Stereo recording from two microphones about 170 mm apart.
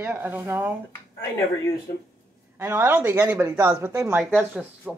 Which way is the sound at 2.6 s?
15° right (ahead or behind).